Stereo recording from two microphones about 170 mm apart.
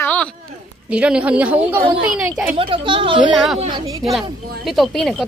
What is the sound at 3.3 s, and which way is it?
Speech, centre (ahead or behind).